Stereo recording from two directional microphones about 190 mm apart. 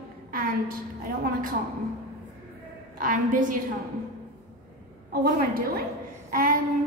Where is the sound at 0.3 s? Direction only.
50° right (ahead or behind).